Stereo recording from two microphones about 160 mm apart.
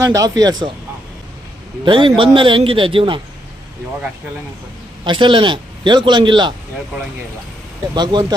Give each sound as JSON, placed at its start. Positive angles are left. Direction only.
{"t": 0.0, "sound": "a man's voice", "side_deg": -20}
{"t": 1.8, "sound": "a man's voice", "side_deg": -30}
{"t": 5.0, "sound": "a man's voice", "side_deg": -30}
{"t": 7.9, "sound": "a man's voice", "side_deg": -25}